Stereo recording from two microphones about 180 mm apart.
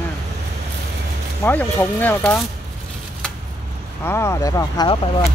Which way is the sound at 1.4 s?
10° left (ahead or behind).